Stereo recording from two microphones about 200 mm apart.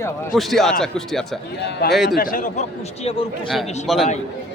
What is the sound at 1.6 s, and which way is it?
Speech, 55° left (ahead or behind).